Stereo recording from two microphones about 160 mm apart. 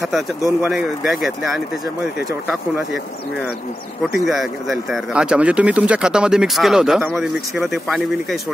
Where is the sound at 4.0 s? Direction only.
Centre (ahead or behind).